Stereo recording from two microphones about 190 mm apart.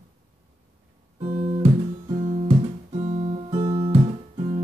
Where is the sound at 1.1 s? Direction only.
30° right (ahead or behind).